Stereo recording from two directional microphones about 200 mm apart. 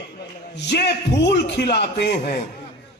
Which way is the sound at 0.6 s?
60° left (ahead or behind).